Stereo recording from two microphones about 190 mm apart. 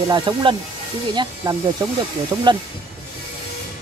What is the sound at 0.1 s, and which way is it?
Speech, 25° right (ahead or behind).